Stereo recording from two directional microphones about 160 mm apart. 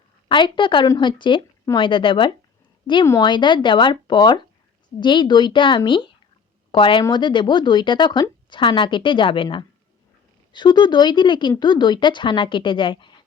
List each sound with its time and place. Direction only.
0.3 s a woman's voice: 30° left (ahead or behind)